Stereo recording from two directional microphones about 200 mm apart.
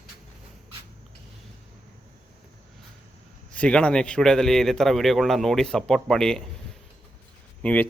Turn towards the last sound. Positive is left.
turn(degrees=5)  # may be behind; listen again after turning